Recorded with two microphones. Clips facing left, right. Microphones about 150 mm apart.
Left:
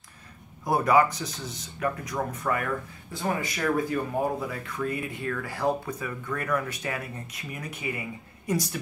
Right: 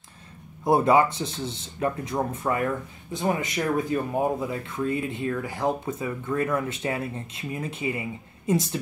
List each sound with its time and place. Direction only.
0.7 s speech: 25° right (ahead or behind)